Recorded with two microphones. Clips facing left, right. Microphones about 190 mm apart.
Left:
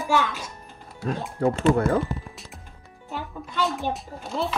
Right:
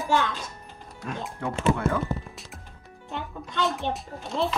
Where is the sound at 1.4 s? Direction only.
40° left (ahead or behind).